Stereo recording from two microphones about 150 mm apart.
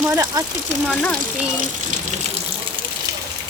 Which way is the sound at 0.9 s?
10° left (ahead or behind).